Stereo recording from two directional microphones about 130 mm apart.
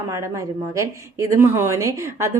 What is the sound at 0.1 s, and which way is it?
A woman's voice, 25° right (ahead or behind).